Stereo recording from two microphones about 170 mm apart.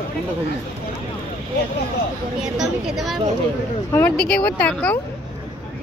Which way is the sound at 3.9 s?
10° left (ahead or behind).